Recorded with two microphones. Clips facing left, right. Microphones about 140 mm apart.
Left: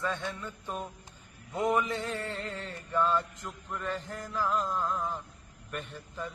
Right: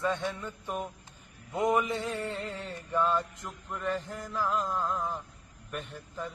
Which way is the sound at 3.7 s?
Centre (ahead or behind).